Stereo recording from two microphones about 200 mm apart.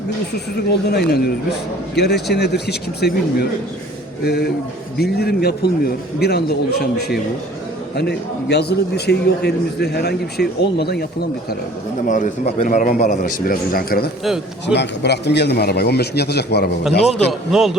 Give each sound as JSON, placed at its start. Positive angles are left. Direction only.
{"t": 0.7, "sound": "a man's voice", "side_deg": 55}
{"t": 12.0, "sound": "a man's voice", "side_deg": 40}
{"t": 17.1, "sound": "a man's voice", "side_deg": 0}